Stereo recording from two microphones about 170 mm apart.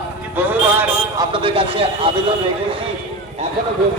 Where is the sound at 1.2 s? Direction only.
30° right (ahead or behind).